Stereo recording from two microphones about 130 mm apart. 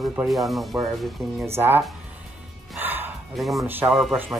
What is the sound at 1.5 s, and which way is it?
Speech, 15° right (ahead or behind).